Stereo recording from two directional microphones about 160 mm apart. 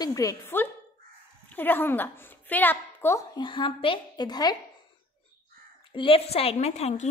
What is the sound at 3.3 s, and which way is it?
A woman's voice, 30° left (ahead or behind).